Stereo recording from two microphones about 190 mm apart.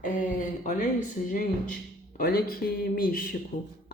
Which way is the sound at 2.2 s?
50° left (ahead or behind).